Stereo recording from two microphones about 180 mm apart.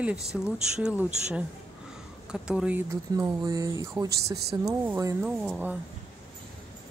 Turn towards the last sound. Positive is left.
turn(degrees=-10)  # may be behind; listen again after turning